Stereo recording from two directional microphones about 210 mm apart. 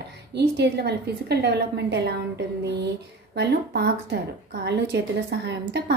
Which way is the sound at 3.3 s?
50° right (ahead or behind).